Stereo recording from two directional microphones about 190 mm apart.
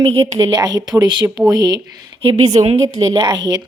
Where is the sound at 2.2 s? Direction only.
35° right (ahead or behind).